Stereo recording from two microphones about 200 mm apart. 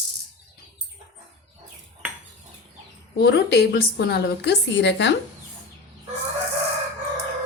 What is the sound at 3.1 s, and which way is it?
A woman's voice, 55° left (ahead or behind).